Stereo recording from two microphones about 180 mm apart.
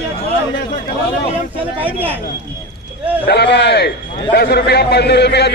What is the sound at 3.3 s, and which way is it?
A man's voice, 65° left (ahead or behind).